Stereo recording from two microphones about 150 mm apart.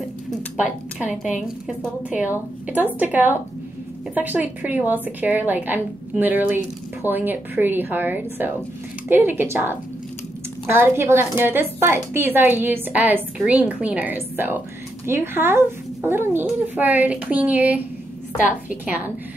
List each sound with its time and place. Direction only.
0.6 s a woman's voice: 5° right (ahead or behind)